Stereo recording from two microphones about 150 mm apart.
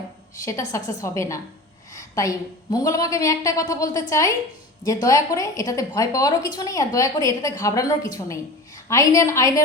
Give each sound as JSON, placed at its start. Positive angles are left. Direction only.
{"t": 0.4, "sound": "a woman's voice", "side_deg": 20}